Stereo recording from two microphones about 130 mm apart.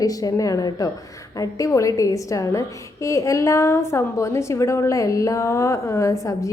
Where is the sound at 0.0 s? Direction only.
30° left (ahead or behind).